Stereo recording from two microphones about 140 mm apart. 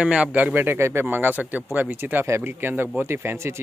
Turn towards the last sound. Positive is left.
turn(degrees=-15)  # may be behind; listen again after turning